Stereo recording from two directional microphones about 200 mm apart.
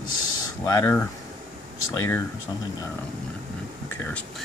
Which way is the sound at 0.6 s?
10° left (ahead or behind).